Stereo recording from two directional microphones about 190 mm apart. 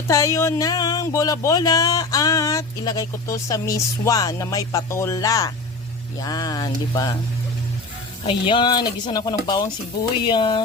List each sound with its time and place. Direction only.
0.1 s speech: 15° left (ahead or behind)
8.3 s speech: 25° left (ahead or behind)